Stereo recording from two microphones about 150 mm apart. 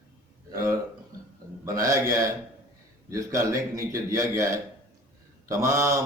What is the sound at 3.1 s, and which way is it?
A man's voice, 20° right (ahead or behind).